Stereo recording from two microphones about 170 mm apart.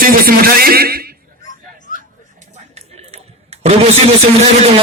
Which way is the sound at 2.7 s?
40° right (ahead or behind).